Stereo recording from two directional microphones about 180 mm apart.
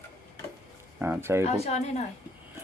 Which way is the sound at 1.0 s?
10° right (ahead or behind).